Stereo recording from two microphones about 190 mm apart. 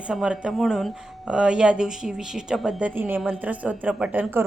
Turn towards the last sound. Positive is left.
turn(degrees=-10)  # may be behind; listen again after turning